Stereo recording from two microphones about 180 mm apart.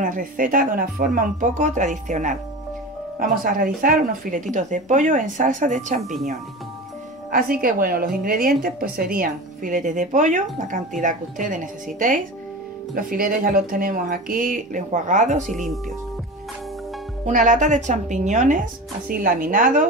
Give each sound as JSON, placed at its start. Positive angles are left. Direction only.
{"t": 0.0, "sound": "a woman's voice", "side_deg": -45}
{"t": 7.2, "sound": "a woman's voice", "side_deg": -50}
{"t": 15.5, "sound": "speech", "side_deg": 0}
{"t": 17.3, "sound": "a woman's voice", "side_deg": -45}